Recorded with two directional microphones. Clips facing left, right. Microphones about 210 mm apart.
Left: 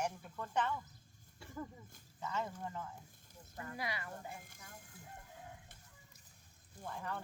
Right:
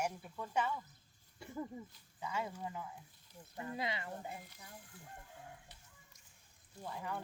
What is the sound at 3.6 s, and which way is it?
Speech, 20° right (ahead or behind).